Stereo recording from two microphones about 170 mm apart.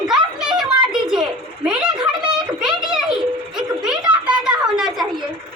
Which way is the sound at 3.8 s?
5° right (ahead or behind).